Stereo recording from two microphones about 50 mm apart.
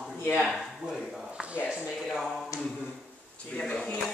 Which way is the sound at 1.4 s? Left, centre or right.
Right.